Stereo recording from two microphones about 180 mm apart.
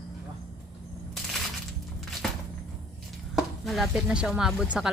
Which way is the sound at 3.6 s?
Centre (ahead or behind).